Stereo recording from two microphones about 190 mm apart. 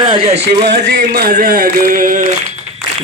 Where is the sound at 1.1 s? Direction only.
50° right (ahead or behind).